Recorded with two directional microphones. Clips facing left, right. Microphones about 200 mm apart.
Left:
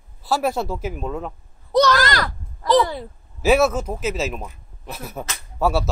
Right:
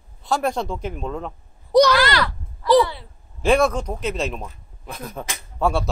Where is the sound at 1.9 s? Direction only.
45° left (ahead or behind).